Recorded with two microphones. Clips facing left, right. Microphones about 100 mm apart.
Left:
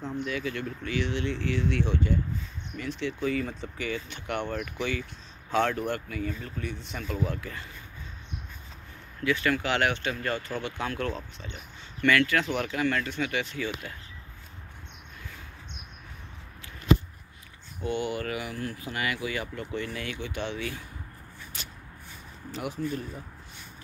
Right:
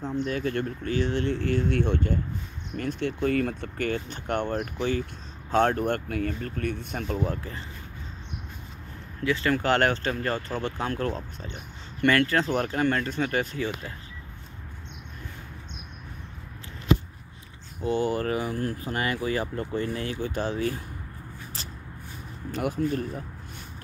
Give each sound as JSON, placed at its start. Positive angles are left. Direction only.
{"t": 0.2, "sound": "speech", "side_deg": -45}
{"t": 7.2, "sound": "speech", "side_deg": -35}
{"t": 9.2, "sound": "speech", "side_deg": -30}
{"t": 9.6, "sound": "speech", "side_deg": -45}
{"t": 17.8, "sound": "speech", "side_deg": -35}
{"t": 21.6, "sound": "a sound", "side_deg": -35}
{"t": 22.5, "sound": "speech", "side_deg": -50}